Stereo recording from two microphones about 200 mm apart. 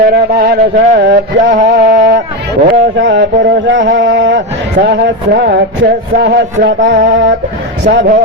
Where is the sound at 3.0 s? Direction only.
65° right (ahead or behind).